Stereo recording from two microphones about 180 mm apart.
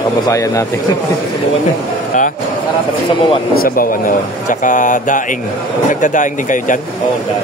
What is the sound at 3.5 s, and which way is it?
Speech, 50° left (ahead or behind).